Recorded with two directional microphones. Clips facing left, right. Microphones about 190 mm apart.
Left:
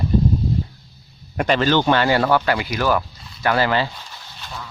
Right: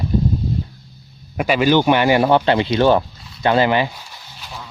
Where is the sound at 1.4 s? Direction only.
10° right (ahead or behind).